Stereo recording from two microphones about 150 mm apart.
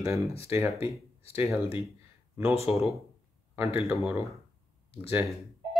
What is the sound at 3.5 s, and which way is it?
Speech, 15° right (ahead or behind).